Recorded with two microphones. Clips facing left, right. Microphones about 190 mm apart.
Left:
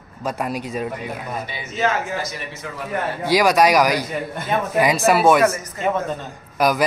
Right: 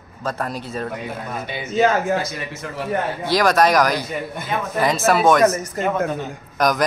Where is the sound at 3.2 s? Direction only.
10° left (ahead or behind).